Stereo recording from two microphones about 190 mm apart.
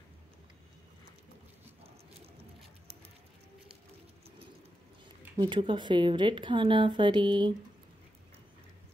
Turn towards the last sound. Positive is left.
turn(degrees=-25)  # may be behind; listen again after turning